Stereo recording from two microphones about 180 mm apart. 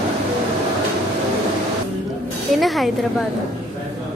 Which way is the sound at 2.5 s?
Centre (ahead or behind).